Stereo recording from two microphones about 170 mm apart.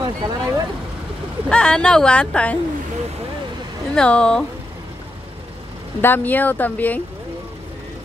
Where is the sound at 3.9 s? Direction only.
5° left (ahead or behind).